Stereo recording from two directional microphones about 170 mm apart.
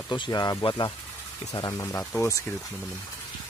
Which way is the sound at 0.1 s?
25° left (ahead or behind).